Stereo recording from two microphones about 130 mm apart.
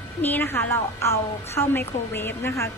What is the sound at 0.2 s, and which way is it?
A woman's voice, 20° left (ahead or behind).